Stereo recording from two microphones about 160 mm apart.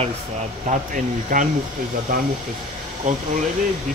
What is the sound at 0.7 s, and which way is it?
Speech, 55° right (ahead or behind).